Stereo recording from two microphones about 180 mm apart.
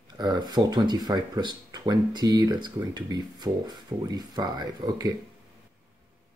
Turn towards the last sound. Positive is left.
turn(degrees=-20)  # may be behind; listen again after turning